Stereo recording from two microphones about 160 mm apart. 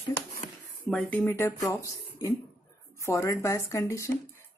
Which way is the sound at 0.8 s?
5° left (ahead or behind).